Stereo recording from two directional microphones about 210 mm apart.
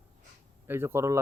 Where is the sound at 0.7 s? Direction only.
10° right (ahead or behind).